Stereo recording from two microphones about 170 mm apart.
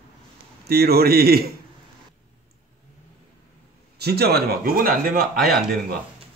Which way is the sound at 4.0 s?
70° right (ahead or behind).